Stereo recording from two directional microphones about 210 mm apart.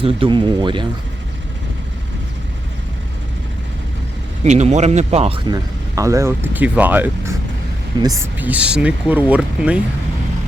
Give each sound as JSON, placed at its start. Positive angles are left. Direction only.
{"t": 0.0, "sound": "speech", "side_deg": -25}
{"t": 4.4, "sound": "speech", "side_deg": -35}
{"t": 5.9, "sound": "speech", "side_deg": -15}